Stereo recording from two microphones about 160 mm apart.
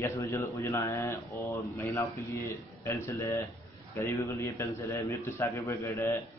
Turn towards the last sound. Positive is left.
turn(degrees=20)  # may be behind; listen again after turning